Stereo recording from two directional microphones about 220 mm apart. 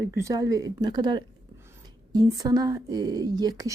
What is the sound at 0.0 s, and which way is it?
Speech, 15° right (ahead or behind).